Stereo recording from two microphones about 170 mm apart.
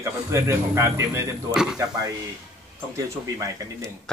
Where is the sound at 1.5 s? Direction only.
5° right (ahead or behind).